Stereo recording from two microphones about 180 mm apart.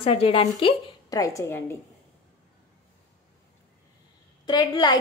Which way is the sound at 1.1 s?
15° left (ahead or behind).